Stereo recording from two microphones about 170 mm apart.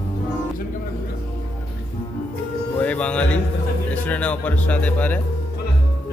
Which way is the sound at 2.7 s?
10° left (ahead or behind).